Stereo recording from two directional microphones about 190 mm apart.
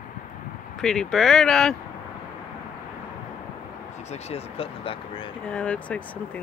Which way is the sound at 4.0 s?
35° left (ahead or behind).